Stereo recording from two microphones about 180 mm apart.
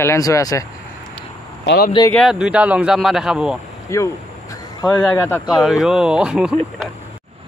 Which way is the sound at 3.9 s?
15° left (ahead or behind).